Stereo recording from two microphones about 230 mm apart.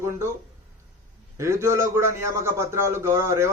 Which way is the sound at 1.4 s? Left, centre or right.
Centre.